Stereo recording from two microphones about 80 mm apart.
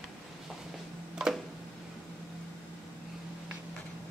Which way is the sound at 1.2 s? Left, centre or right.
Centre.